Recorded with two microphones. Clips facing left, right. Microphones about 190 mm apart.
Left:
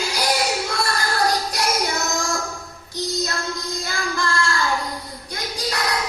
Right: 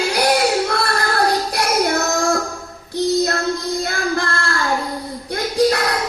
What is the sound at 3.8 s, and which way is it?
Music, 60° right (ahead or behind).